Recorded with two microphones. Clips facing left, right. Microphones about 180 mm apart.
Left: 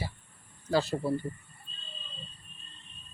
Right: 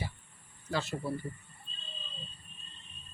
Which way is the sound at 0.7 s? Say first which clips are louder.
Left 6 dB; 35° left (ahead or behind).